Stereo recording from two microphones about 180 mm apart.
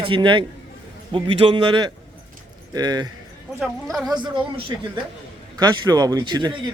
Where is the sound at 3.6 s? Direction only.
Centre (ahead or behind).